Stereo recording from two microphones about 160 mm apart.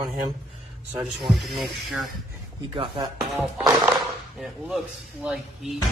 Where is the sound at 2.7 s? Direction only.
30° right (ahead or behind).